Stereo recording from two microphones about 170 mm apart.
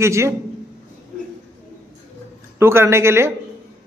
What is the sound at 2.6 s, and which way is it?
Speech, 15° right (ahead or behind).